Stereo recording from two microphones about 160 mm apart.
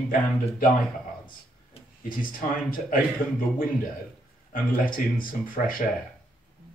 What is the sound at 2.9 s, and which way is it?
Speech, 60° left (ahead or behind).